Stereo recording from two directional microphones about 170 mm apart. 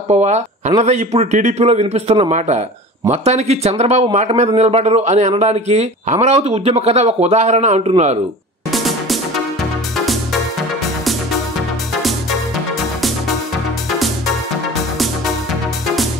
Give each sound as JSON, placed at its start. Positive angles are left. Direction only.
{"t": 0.1, "sound": "speech", "side_deg": -40}
{"t": 8.7, "sound": "music", "side_deg": 0}
{"t": 11.9, "sound": "music", "side_deg": 0}
{"t": 13.8, "sound": "music", "side_deg": 0}